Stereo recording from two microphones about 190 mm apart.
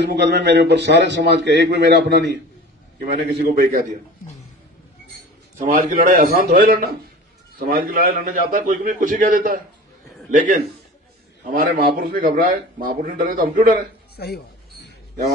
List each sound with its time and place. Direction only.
0.1 s a man's voice: 60° right (ahead or behind)
5.7 s a man's voice: 45° right (ahead or behind)
14.1 s a sound: 55° left (ahead or behind)